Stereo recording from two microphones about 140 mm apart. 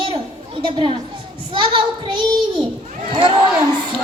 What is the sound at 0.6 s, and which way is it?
A woman's voice, 35° right (ahead or behind).